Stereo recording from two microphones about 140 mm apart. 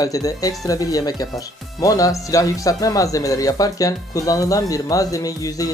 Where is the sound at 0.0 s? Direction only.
25° left (ahead or behind).